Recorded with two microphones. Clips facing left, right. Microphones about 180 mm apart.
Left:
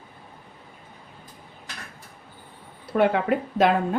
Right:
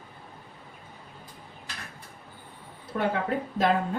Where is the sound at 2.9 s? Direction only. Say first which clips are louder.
Left 6 dB; 70° left (ahead or behind).